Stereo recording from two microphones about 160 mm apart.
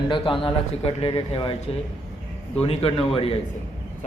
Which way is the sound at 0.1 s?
35° left (ahead or behind).